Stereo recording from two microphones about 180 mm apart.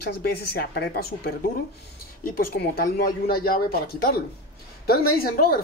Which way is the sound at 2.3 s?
55° left (ahead or behind).